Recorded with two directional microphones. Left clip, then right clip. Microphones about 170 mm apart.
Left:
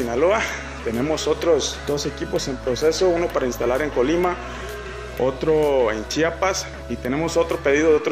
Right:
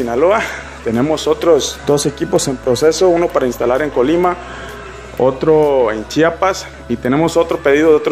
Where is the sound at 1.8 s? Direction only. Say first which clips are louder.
Right 10 dB; 20° right (ahead or behind).